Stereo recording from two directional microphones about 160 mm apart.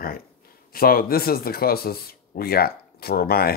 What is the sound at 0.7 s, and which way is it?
Speech, 65° left (ahead or behind).